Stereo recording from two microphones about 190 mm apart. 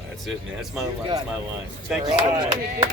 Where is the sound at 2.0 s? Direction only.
25° right (ahead or behind).